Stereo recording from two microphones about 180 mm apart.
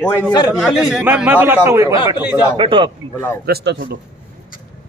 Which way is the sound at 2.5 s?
30° right (ahead or behind).